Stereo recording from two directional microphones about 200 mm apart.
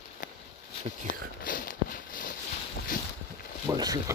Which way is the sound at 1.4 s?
40° left (ahead or behind).